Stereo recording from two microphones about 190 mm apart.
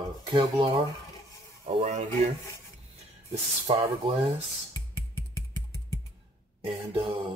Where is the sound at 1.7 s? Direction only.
35° right (ahead or behind).